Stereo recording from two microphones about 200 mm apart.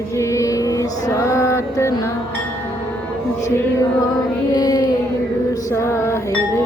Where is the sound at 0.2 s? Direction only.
15° left (ahead or behind).